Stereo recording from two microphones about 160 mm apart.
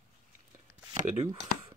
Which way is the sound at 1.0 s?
40° right (ahead or behind).